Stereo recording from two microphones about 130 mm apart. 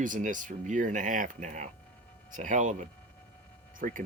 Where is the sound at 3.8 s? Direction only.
90° right.